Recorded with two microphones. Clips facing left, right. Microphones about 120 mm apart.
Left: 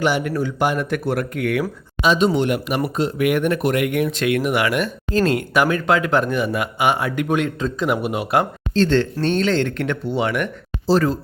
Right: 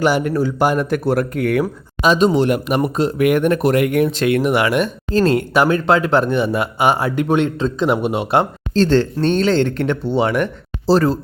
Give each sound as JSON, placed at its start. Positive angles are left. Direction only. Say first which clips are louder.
{"t": 0.0, "sound": "speech", "louder": "right 4 dB", "side_deg": -40}